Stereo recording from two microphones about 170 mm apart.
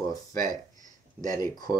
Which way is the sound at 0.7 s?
50° right (ahead or behind).